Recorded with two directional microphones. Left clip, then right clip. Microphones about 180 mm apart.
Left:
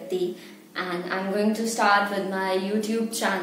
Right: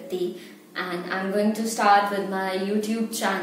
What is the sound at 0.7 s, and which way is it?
A woman's voice, 15° left (ahead or behind).